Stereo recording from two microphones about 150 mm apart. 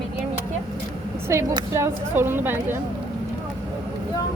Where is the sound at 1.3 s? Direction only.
20° right (ahead or behind).